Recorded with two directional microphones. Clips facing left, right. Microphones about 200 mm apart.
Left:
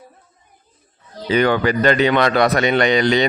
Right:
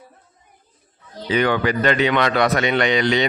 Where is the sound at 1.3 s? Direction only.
40° left (ahead or behind).